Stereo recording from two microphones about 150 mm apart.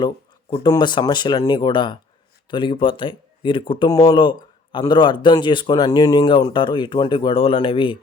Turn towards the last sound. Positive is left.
turn(degrees=35)  # may be behind; listen again after turning